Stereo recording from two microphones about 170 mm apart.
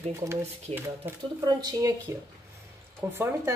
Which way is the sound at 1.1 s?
20° right (ahead or behind).